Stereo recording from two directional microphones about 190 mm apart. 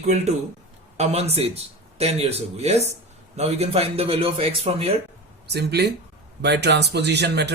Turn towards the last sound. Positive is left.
turn(degrees=-60)  # may be behind; listen again after turning